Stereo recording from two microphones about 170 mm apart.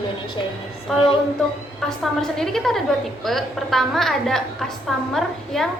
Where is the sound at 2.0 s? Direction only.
Centre (ahead or behind).